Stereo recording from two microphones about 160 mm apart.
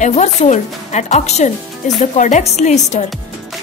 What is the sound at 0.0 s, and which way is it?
A woman's voice, 45° left (ahead or behind).